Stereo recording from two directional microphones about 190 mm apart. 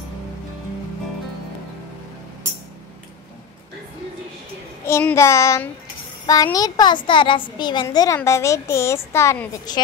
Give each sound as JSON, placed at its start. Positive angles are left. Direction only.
{"t": 4.8, "sound": "child singing", "side_deg": 15}
{"t": 6.2, "sound": "a child's voice", "side_deg": 20}